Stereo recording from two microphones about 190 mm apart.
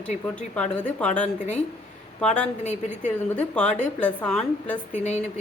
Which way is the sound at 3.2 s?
5° left (ahead or behind).